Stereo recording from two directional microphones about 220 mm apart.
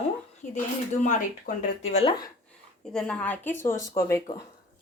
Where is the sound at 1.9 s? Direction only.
30° left (ahead or behind).